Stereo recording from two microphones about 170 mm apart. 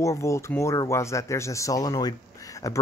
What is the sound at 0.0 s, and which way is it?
Speech, 15° left (ahead or behind).